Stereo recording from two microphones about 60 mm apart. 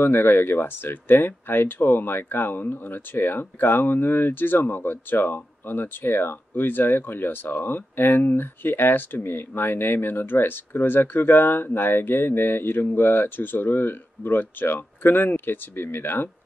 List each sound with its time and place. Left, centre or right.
0.0 s speech: left